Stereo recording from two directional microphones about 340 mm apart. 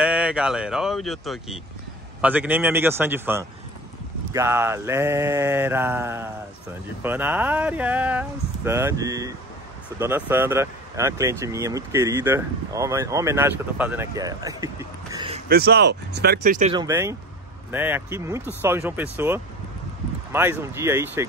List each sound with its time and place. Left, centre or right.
0.0 s speech: centre
15.4 s speech: right; by 21.3 s centre